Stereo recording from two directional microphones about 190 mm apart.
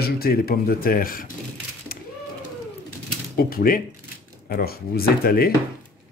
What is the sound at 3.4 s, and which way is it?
A man's voice, 50° left (ahead or behind).